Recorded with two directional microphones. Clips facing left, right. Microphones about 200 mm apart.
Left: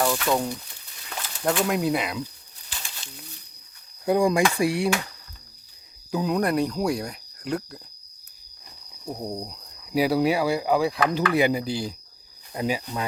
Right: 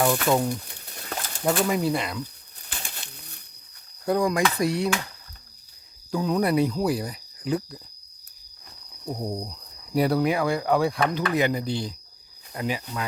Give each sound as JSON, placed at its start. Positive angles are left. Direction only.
{"t": 0.0, "sound": "speech", "side_deg": -5}
{"t": 0.9, "sound": "a sound", "side_deg": -50}
{"t": 1.6, "sound": "speech", "side_deg": 0}
{"t": 2.6, "sound": "pigeon", "side_deg": -55}
{"t": 4.0, "sound": "speech", "side_deg": 10}
{"t": 6.1, "sound": "cricket", "side_deg": 5}
{"t": 6.4, "sound": "speech", "side_deg": -5}
{"t": 6.8, "sound": "cricket", "side_deg": -5}
{"t": 9.0, "sound": "speech", "side_deg": 0}
{"t": 9.5, "sound": "cricket", "side_deg": 5}
{"t": 10.2, "sound": "speech", "side_deg": 10}